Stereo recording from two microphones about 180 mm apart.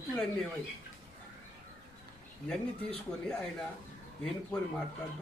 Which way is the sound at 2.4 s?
5° left (ahead or behind).